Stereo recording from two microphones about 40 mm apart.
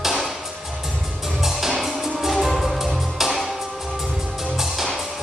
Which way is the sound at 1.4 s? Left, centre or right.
Centre.